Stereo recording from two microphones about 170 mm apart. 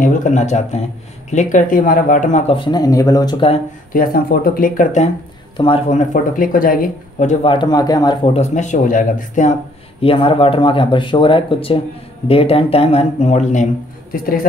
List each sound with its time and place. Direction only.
0.0 s speech: 45° left (ahead or behind)
2.5 s speech: 25° left (ahead or behind)
3.9 s speech: 60° left (ahead or behind)
5.6 s speech: 35° left (ahead or behind)
7.4 s speech: 25° left (ahead or behind)
8.4 s speech: 45° left (ahead or behind)
10.0 s speech: 30° left (ahead or behind)